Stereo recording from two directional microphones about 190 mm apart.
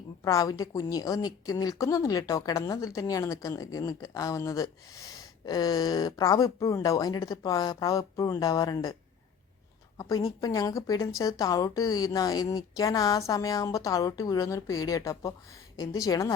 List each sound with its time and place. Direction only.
0.3 s a woman's voice: 20° left (ahead or behind)
10.0 s a woman's voice: 20° left (ahead or behind)